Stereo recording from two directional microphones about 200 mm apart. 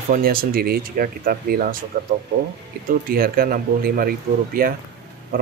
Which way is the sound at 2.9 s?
45° right (ahead or behind).